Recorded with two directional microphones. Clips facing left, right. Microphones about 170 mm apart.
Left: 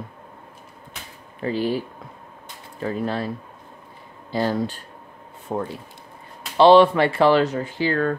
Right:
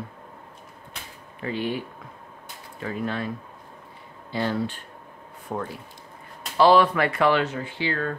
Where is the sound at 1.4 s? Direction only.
35° left (ahead or behind).